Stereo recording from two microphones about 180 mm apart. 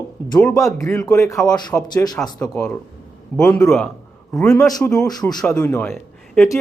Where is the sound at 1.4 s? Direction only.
5° left (ahead or behind).